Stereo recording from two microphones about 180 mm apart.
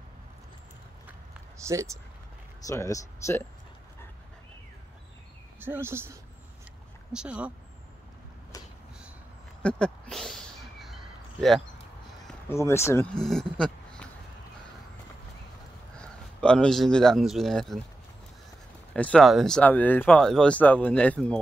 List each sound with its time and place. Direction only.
1.6 s speech: 15° right (ahead or behind)
2.6 s speech: 15° left (ahead or behind)
5.6 s speech: 10° right (ahead or behind)
9.6 s a sound: 5° left (ahead or behind)
12.4 s speech: 15° left (ahead or behind)
16.0 s speech: 5° left (ahead or behind)
18.9 s speech: 5° left (ahead or behind)